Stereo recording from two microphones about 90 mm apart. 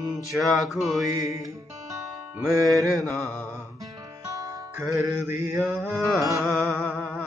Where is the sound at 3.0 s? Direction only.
25° left (ahead or behind).